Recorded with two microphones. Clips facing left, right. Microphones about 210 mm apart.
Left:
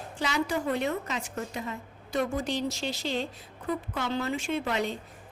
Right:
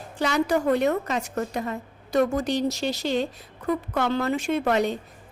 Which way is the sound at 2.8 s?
55° right (ahead or behind).